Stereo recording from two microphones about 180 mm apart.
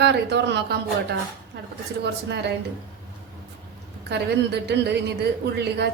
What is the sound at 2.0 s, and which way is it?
Speech, 70° right (ahead or behind).